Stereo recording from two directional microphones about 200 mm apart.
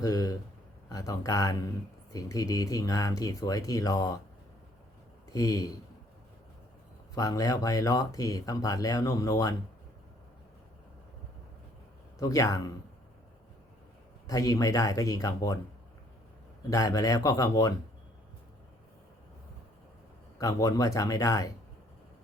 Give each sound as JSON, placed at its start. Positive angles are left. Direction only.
{"t": 0.0, "sound": "speech", "side_deg": 20}
{"t": 5.3, "sound": "speech", "side_deg": 15}
{"t": 7.2, "sound": "speech", "side_deg": 15}
{"t": 12.2, "sound": "speech", "side_deg": 15}
{"t": 14.3, "sound": "speech", "side_deg": 15}
{"t": 16.6, "sound": "speech", "side_deg": 15}
{"t": 20.4, "sound": "speech", "side_deg": 15}